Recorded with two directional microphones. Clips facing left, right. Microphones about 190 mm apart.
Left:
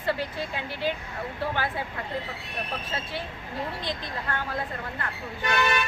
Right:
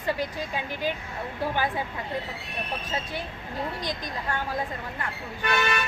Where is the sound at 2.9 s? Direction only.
15° right (ahead or behind).